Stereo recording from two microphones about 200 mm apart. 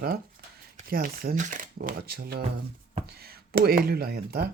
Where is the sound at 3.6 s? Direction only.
50° right (ahead or behind).